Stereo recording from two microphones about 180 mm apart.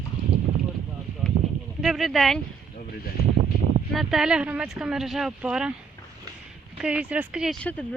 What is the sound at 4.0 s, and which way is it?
Speech, centre (ahead or behind).